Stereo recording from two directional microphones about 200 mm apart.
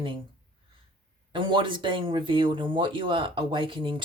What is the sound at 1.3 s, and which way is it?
Speech, 25° right (ahead or behind).